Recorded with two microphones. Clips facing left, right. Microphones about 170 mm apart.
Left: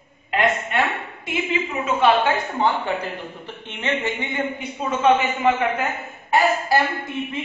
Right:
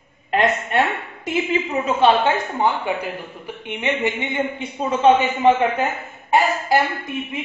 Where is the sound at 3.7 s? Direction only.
15° right (ahead or behind); by 5.5 s 30° right (ahead or behind).